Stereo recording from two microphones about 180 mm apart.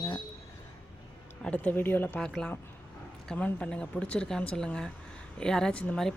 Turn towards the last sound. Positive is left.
turn(degrees=5)  # may be behind; listen again after turning